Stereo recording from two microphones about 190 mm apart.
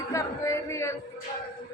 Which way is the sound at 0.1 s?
15° left (ahead or behind).